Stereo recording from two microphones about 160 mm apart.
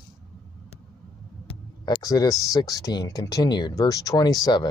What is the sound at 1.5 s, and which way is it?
Speech, 25° left (ahead or behind).